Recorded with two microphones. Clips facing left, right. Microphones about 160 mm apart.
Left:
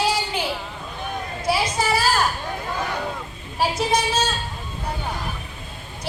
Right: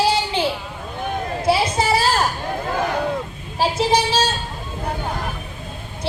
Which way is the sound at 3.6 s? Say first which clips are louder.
Right 3 dB; 30° right (ahead or behind).